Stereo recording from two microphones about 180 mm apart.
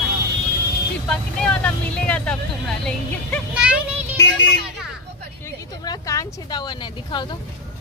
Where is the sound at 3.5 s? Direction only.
5° right (ahead or behind).